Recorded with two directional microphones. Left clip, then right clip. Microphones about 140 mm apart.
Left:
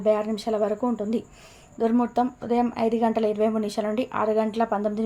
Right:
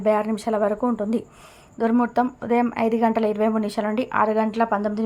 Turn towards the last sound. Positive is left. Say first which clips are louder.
# right 2 dB
turn(degrees=-15)  # may be behind; listen again after turning